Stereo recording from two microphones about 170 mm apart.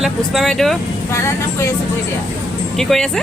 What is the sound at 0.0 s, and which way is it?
Speech, centre (ahead or behind).